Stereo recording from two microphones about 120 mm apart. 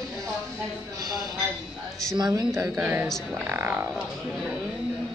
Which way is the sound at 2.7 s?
15° right (ahead or behind).